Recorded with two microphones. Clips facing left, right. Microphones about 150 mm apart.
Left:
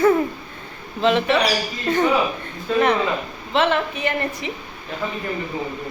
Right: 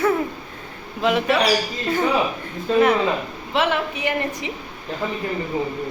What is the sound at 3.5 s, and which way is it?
A woman's voice, 10° right (ahead or behind).